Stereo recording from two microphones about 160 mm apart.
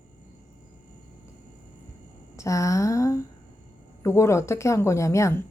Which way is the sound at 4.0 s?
15° left (ahead or behind).